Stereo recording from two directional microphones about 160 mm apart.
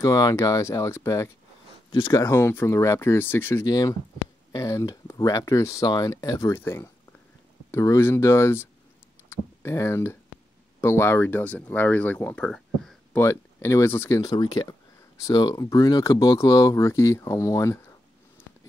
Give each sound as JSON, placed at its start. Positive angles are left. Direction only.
{"t": 0.0, "sound": "speech", "side_deg": 20}
{"t": 1.9, "sound": "speech", "side_deg": 30}
{"t": 2.1, "sound": "speech", "side_deg": 15}
{"t": 13.2, "sound": "speech", "side_deg": 20}